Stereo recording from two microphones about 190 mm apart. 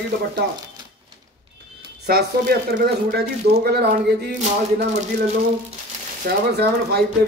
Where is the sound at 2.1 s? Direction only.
55° right (ahead or behind).